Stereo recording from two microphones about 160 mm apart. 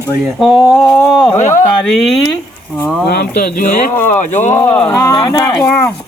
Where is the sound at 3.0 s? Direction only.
75° left (ahead or behind).